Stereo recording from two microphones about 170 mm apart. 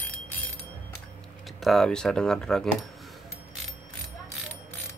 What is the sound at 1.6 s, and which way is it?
Speech, centre (ahead or behind).